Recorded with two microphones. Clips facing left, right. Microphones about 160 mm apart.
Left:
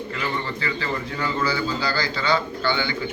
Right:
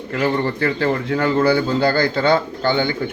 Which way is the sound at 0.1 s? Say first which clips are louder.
Right 12 dB; 50° right (ahead or behind).